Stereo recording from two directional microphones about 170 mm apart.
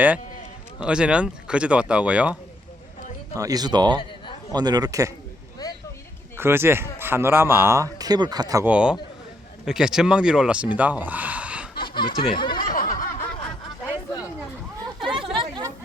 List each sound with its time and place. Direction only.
0.8 s speech: 5° right (ahead or behind)
3.3 s speech: 20° right (ahead or behind)
5.6 s a sound: 20° left (ahead or behind)
6.3 s speech: 15° right (ahead or behind)
8.6 s speech: 5° right (ahead or behind)
10.8 s gasp: 10° right (ahead or behind)
11.8 s snicker: 30° left (ahead or behind)
12.7 s snicker: 55° left (ahead or behind)
13.9 s a sound: 20° left (ahead or behind)
15.0 s chatter: 30° right (ahead or behind)